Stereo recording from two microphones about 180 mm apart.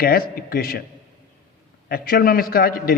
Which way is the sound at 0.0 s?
55° left (ahead or behind).